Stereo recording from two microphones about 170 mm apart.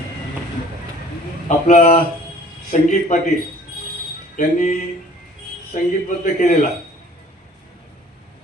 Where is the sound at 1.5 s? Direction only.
45° left (ahead or behind).